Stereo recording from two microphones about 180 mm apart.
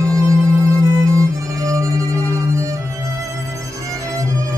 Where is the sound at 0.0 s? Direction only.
15° right (ahead or behind).